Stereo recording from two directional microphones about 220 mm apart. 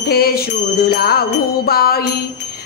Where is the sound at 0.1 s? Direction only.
45° left (ahead or behind).